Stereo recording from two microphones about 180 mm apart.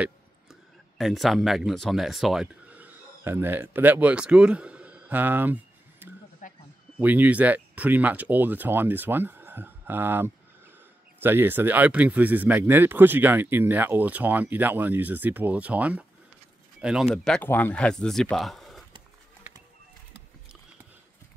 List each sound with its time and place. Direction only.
0.0 s speech: centre (ahead or behind)
6.4 s a sound: 45° left (ahead or behind)
7.0 s speech: 10° right (ahead or behind)